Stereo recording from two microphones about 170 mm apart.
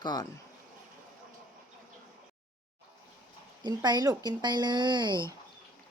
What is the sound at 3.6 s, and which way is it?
Speech, 25° right (ahead or behind).